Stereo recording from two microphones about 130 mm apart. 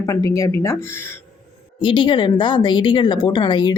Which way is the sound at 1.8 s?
40° left (ahead or behind).